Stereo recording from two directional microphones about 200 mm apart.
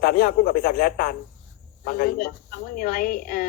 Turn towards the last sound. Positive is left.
turn(degrees=45)  # may be behind; listen again after turning